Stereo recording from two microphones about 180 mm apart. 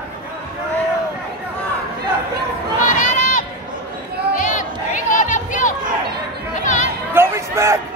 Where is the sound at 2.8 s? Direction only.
45° left (ahead or behind).